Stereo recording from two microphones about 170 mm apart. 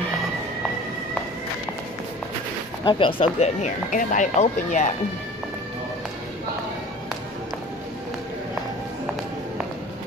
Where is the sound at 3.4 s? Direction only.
40° left (ahead or behind).